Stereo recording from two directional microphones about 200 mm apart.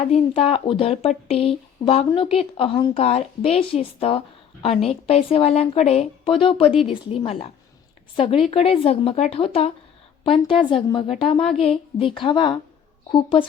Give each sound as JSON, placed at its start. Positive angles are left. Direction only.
{"t": 0.0, "sound": "speech", "side_deg": 30}